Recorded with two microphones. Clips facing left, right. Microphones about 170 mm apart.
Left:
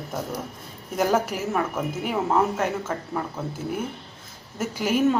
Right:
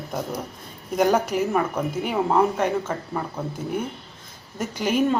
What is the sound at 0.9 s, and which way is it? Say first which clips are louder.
Speech: right 3 dB; centre (ahead or behind).